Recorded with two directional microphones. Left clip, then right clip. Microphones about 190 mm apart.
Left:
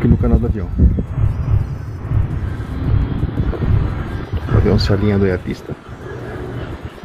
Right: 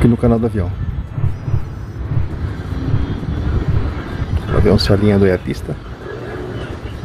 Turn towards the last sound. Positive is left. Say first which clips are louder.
# right 3 dB
turn(degrees=-30)  # may be behind; listen again after turning